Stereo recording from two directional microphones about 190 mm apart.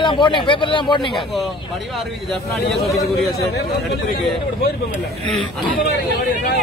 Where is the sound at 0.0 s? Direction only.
25° left (ahead or behind).